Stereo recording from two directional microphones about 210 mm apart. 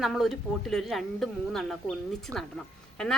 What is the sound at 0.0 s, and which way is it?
A woman's voice, centre (ahead or behind).